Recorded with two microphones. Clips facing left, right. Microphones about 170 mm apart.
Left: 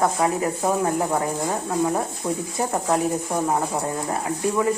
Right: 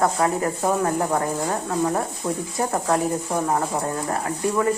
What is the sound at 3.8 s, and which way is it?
Speech, 15° left (ahead or behind).